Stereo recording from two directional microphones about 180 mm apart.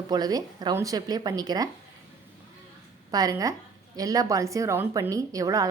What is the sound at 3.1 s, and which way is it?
A woman's voice, 20° right (ahead or behind).